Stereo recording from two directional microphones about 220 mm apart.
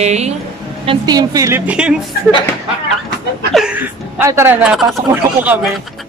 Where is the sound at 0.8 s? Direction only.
20° right (ahead or behind).